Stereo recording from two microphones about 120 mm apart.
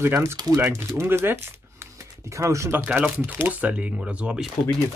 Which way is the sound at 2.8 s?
10° right (ahead or behind).